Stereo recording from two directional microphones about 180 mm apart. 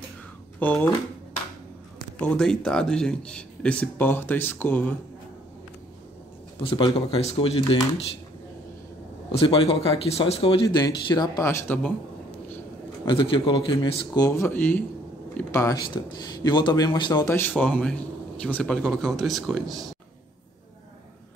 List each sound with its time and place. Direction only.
0.6 s speech: 10° left (ahead or behind)
2.1 s speech: 5° left (ahead or behind)
6.6 s speech: 30° left (ahead or behind)
9.3 s speech: 30° left (ahead or behind)
11.4 s speech: 10° left (ahead or behind)
13.0 s speech: 30° left (ahead or behind)
17.3 s speech: 10° left (ahead or behind)